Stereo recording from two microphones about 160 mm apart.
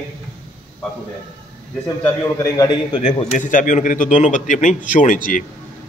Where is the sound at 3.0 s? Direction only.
55° left (ahead or behind).